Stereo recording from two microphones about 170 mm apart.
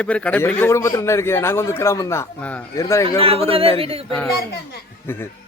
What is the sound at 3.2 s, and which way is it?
Speech, 35° right (ahead or behind).